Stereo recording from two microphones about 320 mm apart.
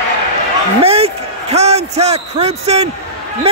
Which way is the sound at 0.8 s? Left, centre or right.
Centre.